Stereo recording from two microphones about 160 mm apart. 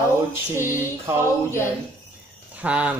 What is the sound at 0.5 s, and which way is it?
Speech, 15° right (ahead or behind).